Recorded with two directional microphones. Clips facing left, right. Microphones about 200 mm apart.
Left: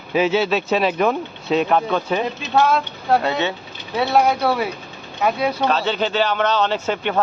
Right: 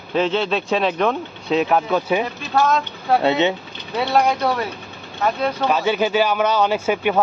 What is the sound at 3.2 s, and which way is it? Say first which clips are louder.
Speech: right 4 dB; 20° right (ahead or behind).